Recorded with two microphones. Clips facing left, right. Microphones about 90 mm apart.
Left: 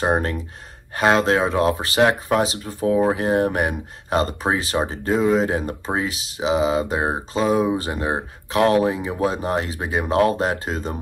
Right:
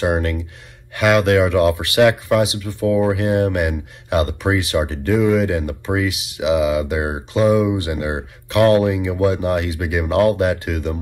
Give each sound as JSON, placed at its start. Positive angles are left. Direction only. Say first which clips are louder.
{"t": 0.0, "sound": "speech", "louder": "right 1 dB", "side_deg": 30}